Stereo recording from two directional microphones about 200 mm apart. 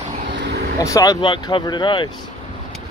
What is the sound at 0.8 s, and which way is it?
Speech, 15° left (ahead or behind).